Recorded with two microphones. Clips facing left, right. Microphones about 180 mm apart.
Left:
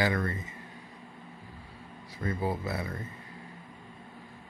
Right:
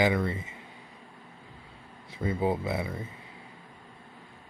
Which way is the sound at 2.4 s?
25° right (ahead or behind).